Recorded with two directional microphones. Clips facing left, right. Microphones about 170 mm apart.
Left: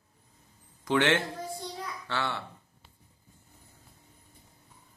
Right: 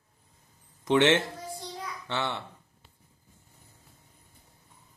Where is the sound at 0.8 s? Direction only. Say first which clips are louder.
Right 3 dB; 25° right (ahead or behind).